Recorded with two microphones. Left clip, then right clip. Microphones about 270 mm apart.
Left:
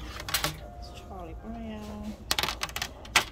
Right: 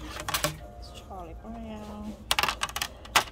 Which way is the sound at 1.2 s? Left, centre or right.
Centre.